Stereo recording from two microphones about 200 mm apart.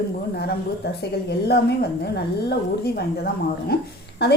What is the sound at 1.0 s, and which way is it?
Speech, 55° left (ahead or behind).